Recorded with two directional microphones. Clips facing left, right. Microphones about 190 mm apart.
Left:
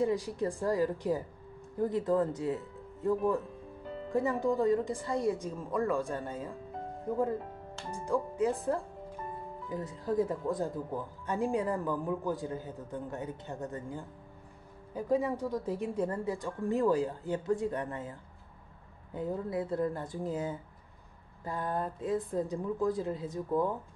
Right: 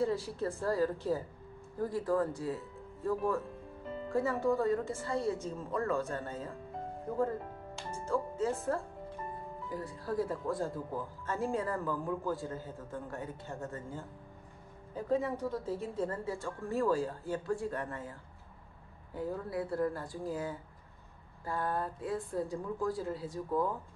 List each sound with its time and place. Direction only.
0.0 s speech: 15° left (ahead or behind)
7.9 s speech: 15° left (ahead or behind)
19.1 s speech: 20° left (ahead or behind)